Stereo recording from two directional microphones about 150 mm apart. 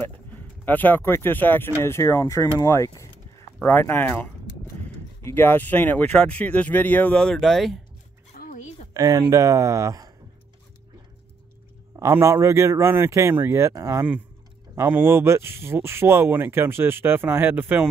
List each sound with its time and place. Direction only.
0.7 s speech: 10° left (ahead or behind)
8.4 s a sound: 55° left (ahead or behind)
8.9 s a man's voice: 25° right (ahead or behind)
12.0 s a man's voice: 20° right (ahead or behind)